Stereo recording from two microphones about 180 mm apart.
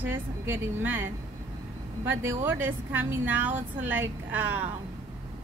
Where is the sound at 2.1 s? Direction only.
15° right (ahead or behind).